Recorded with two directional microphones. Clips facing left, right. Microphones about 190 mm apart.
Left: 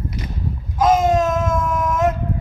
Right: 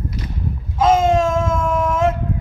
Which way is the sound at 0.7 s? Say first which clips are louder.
Right 1 dB; 25° right (ahead or behind).